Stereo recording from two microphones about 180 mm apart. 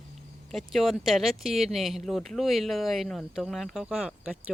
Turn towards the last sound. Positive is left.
turn(degrees=-5)  # may be behind; listen again after turning